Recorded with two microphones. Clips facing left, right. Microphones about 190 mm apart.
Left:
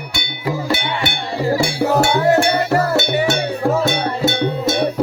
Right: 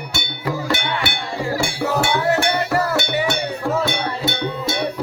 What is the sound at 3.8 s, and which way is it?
Music, 45° left (ahead or behind).